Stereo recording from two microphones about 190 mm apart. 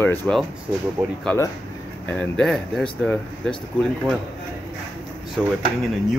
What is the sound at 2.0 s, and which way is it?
Speech, 5° left (ahead or behind).